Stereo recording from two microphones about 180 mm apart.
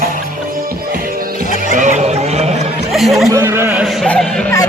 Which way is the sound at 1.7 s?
45° right (ahead or behind).